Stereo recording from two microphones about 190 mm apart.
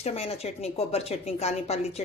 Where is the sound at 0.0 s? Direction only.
35° left (ahead or behind).